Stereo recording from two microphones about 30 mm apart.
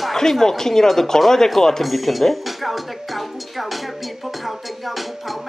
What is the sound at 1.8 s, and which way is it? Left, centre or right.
A woman's voice, centre.